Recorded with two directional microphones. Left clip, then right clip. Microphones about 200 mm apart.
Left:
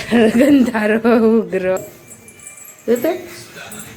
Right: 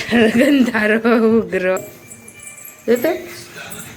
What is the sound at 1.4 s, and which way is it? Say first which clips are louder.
Speech: even; 10° left (ahead or behind).